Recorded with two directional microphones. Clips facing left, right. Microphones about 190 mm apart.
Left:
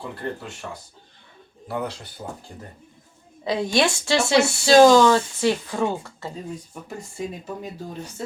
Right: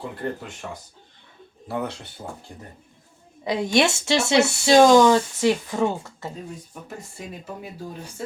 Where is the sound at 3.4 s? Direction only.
20° right (ahead or behind).